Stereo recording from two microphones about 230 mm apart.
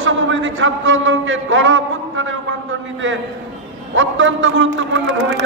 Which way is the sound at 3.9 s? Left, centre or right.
Right.